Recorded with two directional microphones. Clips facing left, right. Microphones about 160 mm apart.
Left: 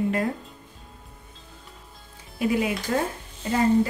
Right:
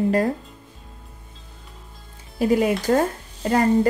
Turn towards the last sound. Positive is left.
turn(degrees=-65)  # may be behind; listen again after turning